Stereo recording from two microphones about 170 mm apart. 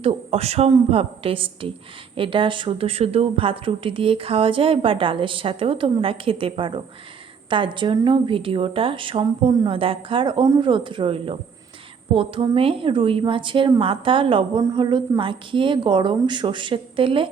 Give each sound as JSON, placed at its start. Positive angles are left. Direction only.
{"t": 0.0, "sound": "a woman's voice", "side_deg": -35}